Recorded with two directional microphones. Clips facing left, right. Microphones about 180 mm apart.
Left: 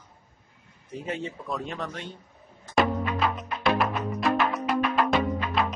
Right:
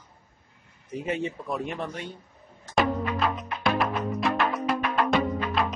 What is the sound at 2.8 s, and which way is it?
Music, centre (ahead or behind).